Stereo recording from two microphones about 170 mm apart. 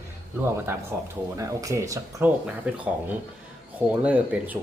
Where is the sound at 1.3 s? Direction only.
20° right (ahead or behind).